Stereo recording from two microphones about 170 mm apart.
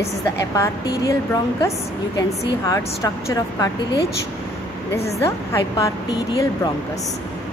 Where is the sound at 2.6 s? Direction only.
20° left (ahead or behind).